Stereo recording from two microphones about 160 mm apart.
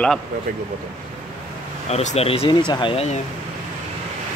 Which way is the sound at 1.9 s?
45° left (ahead or behind).